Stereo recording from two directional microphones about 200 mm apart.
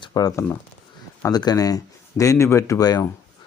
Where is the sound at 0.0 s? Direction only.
20° left (ahead or behind).